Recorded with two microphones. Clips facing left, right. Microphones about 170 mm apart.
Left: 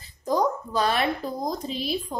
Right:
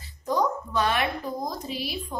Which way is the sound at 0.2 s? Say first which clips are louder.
Left 2 dB; 35° left (ahead or behind).